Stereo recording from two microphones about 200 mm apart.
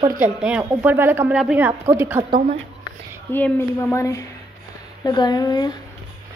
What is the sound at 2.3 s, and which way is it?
Speech, 40° right (ahead or behind).